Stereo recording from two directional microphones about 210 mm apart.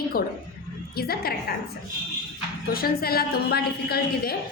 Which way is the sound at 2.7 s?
45° left (ahead or behind).